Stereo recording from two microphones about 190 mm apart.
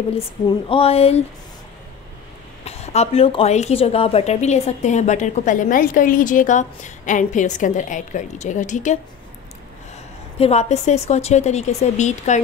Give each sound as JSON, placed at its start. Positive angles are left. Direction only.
{"t": 0.5, "sound": "a woman's voice", "side_deg": 30}
{"t": 2.6, "sound": "a woman's voice", "side_deg": 35}
{"t": 10.4, "sound": "a woman's voice", "side_deg": 35}